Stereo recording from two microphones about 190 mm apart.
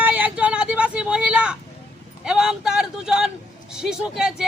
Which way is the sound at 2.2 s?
5° right (ahead or behind).